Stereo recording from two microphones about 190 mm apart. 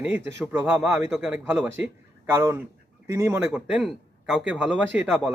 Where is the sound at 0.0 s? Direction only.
5° right (ahead or behind).